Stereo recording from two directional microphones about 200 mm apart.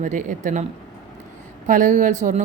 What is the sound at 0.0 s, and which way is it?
Speech, 40° right (ahead or behind).